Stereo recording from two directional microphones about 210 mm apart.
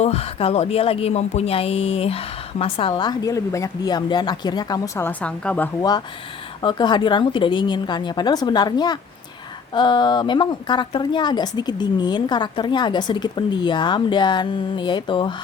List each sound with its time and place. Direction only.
0.0 s speech: 30° left (ahead or behind); by 5.9 s 10° left (ahead or behind)
6.6 s speech: 20° left (ahead or behind)